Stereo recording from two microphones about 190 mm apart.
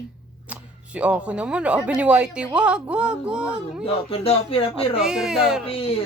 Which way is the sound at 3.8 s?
30° left (ahead or behind).